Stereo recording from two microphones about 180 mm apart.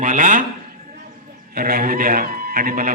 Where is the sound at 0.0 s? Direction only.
45° right (ahead or behind).